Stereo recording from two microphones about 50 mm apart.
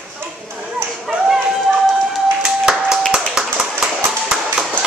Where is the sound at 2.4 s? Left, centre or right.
Centre.